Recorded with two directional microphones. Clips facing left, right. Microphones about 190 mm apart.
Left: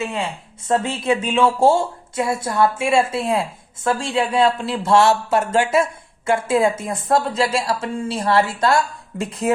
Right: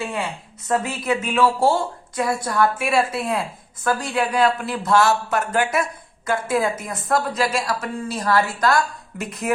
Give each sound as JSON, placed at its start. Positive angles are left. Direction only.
{"t": 0.0, "sound": "speech", "side_deg": 25}